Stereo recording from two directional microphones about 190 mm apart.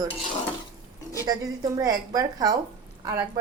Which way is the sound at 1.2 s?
20° right (ahead or behind).